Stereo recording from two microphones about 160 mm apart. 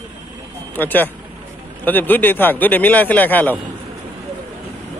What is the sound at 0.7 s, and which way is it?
A man's voice, 10° left (ahead or behind).